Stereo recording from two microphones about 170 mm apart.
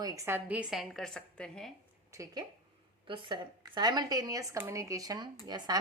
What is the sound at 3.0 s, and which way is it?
Speech, 30° right (ahead or behind).